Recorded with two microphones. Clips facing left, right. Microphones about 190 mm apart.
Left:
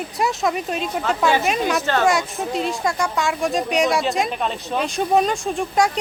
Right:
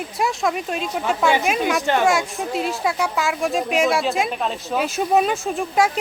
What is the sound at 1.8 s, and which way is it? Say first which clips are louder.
Speech: right 1 dB; 15° right (ahead or behind).